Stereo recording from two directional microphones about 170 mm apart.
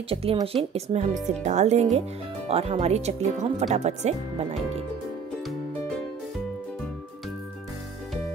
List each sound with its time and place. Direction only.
0.1 s speech: 35° right (ahead or behind)